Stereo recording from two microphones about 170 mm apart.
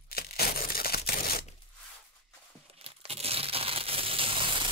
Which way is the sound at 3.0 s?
35° right (ahead or behind).